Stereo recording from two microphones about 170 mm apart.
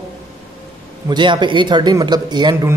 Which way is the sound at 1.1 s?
25° right (ahead or behind).